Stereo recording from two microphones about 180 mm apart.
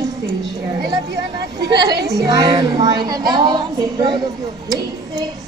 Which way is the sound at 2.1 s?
20° right (ahead or behind).